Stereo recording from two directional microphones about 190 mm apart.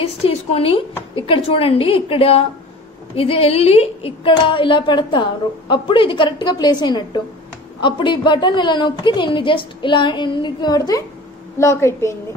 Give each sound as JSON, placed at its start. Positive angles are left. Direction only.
{"t": 0.0, "sound": "a woman's voice", "side_deg": 35}